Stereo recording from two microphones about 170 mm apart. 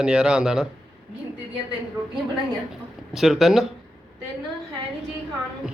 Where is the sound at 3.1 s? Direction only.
Centre (ahead or behind).